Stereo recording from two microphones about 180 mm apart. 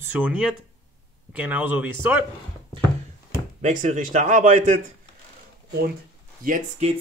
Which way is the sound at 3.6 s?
40° right (ahead or behind).